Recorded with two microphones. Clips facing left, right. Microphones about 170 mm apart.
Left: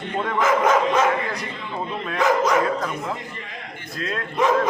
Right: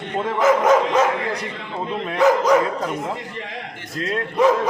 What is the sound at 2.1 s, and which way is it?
Speech, 35° right (ahead or behind).